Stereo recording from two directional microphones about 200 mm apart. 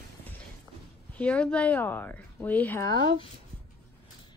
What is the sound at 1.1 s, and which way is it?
Speech, 5° left (ahead or behind).